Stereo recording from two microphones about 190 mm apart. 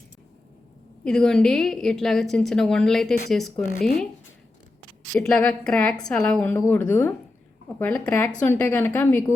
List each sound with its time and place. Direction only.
1.0 s a woman's voice: 5° left (ahead or behind)
3.8 s speech: 55° left (ahead or behind)
5.2 s a woman's voice: 5° left (ahead or behind)